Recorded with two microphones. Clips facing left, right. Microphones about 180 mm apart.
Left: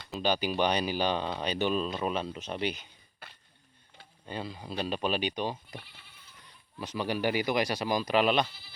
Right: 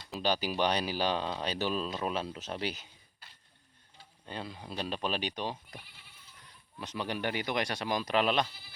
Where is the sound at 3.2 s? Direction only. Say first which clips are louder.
Left 9 dB; 60° left (ahead or behind).